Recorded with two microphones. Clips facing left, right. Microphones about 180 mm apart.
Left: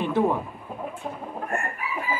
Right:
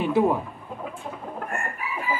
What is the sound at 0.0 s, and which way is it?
Chicken, 10° right (ahead or behind).